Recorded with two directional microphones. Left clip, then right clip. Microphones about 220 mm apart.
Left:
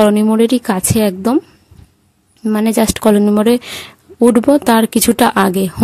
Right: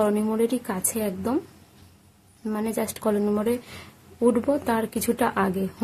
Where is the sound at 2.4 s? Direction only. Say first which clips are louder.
Left 13 dB; 40° left (ahead or behind).